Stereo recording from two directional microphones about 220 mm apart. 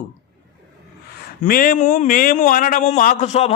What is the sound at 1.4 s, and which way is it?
A man's voice, 40° left (ahead or behind).